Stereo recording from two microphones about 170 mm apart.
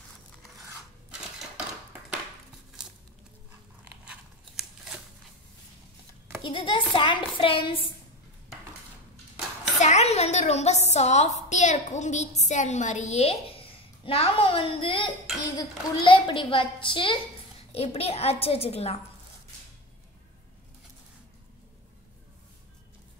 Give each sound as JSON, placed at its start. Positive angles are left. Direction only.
{"t": 4.0, "sound": "scissors", "side_deg": -5}
{"t": 6.4, "sound": "a woman's voice", "side_deg": 30}
{"t": 9.8, "sound": "a woman's voice", "side_deg": 40}